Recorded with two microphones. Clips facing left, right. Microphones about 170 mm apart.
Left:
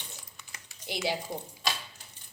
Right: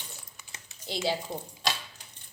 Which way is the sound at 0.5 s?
20° right (ahead or behind).